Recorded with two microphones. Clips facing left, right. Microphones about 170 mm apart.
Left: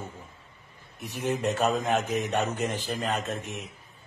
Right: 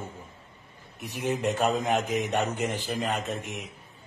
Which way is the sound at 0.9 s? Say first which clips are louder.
Even; 15° right (ahead or behind).